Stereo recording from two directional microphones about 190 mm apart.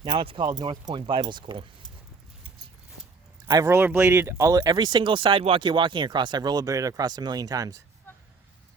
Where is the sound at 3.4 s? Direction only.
15° right (ahead or behind).